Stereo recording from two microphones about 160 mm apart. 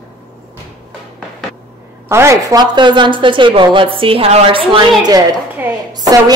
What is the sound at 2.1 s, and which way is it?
A woman's voice, 15° right (ahead or behind).